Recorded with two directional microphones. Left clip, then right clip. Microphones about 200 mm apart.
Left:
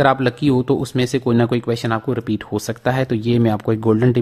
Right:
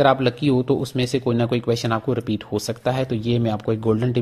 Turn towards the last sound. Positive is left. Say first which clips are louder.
# left 5 dB
turn(degrees=25)  # may be behind; listen again after turning